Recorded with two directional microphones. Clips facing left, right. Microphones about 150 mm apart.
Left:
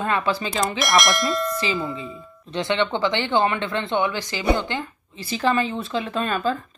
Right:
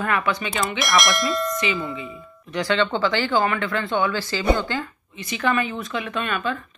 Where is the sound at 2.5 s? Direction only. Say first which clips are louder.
Right 1 dB; 20° left (ahead or behind).